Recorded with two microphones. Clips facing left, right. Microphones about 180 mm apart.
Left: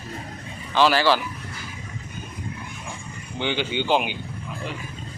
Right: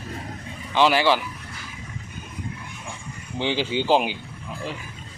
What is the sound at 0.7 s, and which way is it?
Speech, 20° right (ahead or behind).